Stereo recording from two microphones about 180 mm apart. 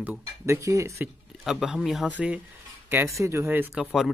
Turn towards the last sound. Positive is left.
turn(degrees=-5)  # may be behind; listen again after turning